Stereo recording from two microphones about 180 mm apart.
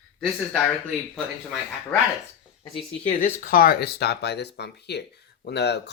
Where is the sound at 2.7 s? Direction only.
40° left (ahead or behind); by 5.8 s 70° left (ahead or behind).